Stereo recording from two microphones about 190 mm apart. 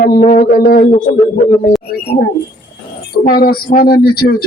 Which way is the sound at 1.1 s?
40° left (ahead or behind).